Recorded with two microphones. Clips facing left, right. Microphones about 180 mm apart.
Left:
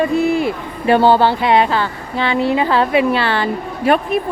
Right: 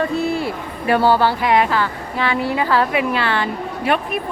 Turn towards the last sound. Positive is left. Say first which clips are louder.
# left 5 dB
turn(degrees=45)  # may be behind; listen again after turning